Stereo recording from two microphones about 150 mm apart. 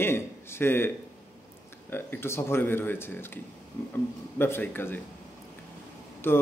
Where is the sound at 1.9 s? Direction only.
15° left (ahead or behind).